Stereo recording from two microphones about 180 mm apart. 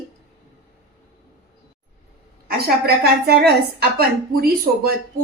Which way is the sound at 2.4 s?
60° right (ahead or behind).